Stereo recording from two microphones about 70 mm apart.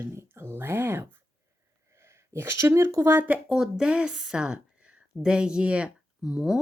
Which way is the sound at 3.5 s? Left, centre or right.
Centre.